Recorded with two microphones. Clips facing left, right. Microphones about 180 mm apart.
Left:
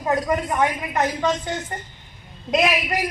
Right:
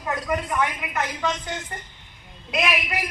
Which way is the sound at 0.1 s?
30° left (ahead or behind).